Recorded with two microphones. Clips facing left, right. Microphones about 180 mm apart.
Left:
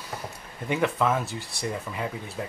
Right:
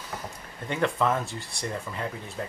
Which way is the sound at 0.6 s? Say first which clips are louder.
Left 1 dB; 5° left (ahead or behind).